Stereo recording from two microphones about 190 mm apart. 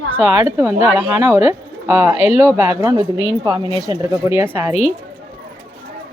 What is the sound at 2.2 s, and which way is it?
Speech, 35° left (ahead or behind).